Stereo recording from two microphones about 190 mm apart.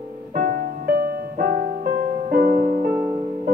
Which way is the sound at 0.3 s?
50° right (ahead or behind).